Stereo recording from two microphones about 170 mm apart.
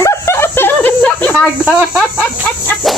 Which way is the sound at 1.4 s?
5° right (ahead or behind).